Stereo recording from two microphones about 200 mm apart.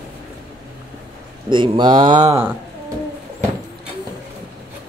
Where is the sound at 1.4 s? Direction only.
25° right (ahead or behind).